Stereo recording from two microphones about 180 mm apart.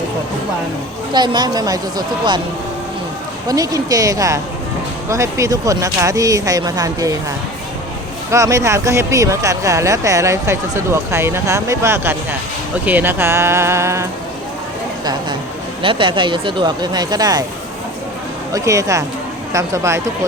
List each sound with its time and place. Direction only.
1.1 s speech: 25° right (ahead or behind)
3.4 s speech: 20° right (ahead or behind)
8.3 s speech: 15° right (ahead or behind)
15.8 s speech: 30° right (ahead or behind)
18.5 s speech: 20° right (ahead or behind)